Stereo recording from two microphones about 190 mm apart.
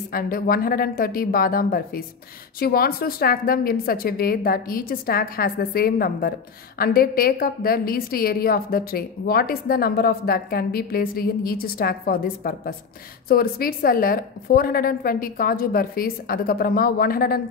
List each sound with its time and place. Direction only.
0.1 s a woman's voice: 50° left (ahead or behind)